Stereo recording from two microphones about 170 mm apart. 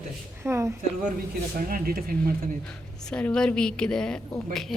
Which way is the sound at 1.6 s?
60° right (ahead or behind).